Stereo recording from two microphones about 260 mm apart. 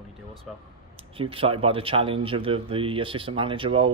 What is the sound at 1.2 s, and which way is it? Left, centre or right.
Speech, right.